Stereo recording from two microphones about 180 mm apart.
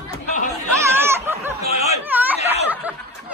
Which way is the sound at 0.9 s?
15° right (ahead or behind).